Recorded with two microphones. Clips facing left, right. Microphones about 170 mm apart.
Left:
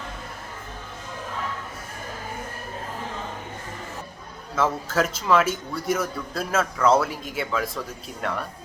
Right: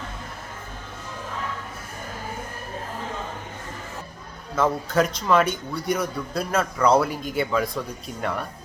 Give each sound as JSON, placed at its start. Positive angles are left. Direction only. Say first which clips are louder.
{"t": 4.5, "sound": "a man's voice", "louder": "right 2 dB", "side_deg": 5}